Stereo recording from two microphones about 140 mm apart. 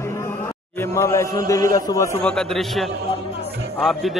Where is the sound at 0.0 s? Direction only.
20° left (ahead or behind).